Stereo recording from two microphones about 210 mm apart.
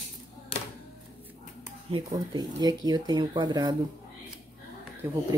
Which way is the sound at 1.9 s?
20° right (ahead or behind).